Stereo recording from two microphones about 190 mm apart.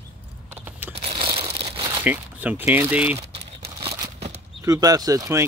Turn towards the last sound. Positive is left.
turn(degrees=-15)  # may be behind; listen again after turning